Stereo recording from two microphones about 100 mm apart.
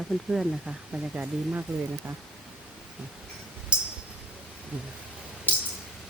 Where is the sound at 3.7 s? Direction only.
10° right (ahead or behind).